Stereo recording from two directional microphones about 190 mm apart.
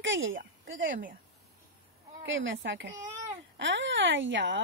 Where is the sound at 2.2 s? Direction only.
85° right.